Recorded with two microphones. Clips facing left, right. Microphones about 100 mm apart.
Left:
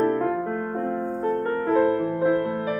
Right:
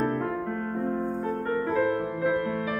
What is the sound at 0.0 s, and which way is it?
Music, 40° left (ahead or behind).